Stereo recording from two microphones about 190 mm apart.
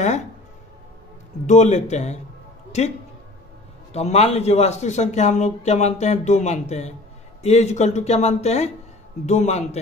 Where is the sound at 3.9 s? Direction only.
35° left (ahead or behind).